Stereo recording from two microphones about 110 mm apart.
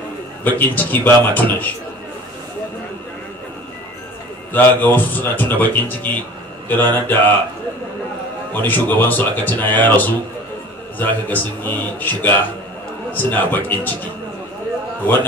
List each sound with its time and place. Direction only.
0.4 s speech: 15° left (ahead or behind)
4.5 s speech: 15° left (ahead or behind)
8.6 s speech: 15° left (ahead or behind)